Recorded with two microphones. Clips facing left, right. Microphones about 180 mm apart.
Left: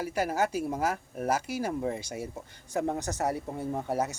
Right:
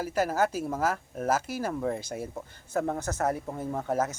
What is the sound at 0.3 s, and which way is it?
Speech, 50° right (ahead or behind).